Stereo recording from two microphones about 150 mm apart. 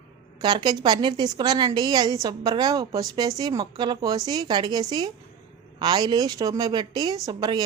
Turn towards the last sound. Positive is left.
turn(degrees=-25)  # may be behind; listen again after turning